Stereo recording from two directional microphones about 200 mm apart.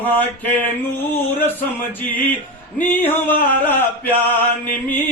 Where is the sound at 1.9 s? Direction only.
10° left (ahead or behind).